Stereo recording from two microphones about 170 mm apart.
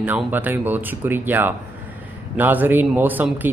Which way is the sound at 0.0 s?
10° right (ahead or behind).